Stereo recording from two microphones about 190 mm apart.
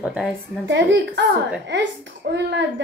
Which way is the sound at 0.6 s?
70° right (ahead or behind).